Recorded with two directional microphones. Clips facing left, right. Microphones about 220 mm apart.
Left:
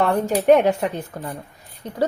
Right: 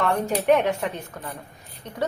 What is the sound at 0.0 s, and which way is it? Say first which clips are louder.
A woman's voice: left 4 dB; 35° left (ahead or behind).